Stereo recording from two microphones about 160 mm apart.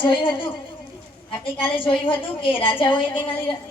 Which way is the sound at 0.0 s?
30° left (ahead or behind).